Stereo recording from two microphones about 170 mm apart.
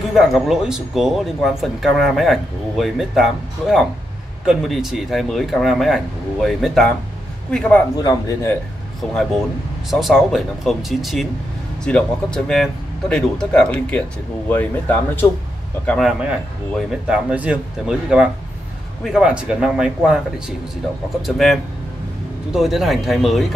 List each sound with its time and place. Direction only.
0.1 s speech: centre (ahead or behind)
8.0 s a man's voice: 20° left (ahead or behind)
9.0 s speech: 5° left (ahead or behind)
15.9 s a man's voice: centre (ahead or behind)
22.5 s speech: centre (ahead or behind)